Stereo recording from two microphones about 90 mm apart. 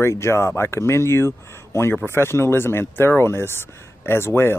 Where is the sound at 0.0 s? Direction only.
30° left (ahead or behind).